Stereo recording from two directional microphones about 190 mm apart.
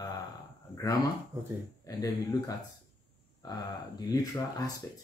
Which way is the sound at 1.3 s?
10° right (ahead or behind).